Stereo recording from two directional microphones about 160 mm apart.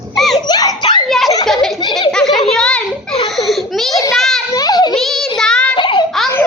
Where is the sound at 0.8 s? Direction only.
30° left (ahead or behind).